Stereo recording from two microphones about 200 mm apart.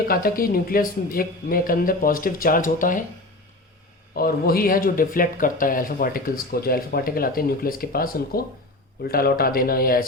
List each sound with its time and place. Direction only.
0.1 s speech: 45° left (ahead or behind)
4.2 s speech: 50° left (ahead or behind)